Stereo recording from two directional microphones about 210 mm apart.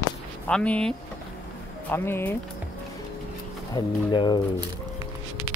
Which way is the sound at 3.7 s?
20° left (ahead or behind).